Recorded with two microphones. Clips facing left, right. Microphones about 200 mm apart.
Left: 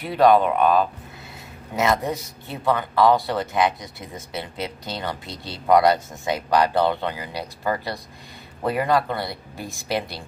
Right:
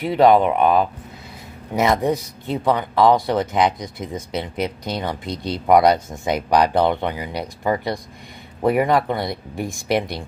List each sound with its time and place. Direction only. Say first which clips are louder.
0.1 s speech: right 2 dB; 20° right (ahead or behind)
1.9 s speech: right 4 dB; 15° right (ahead or behind)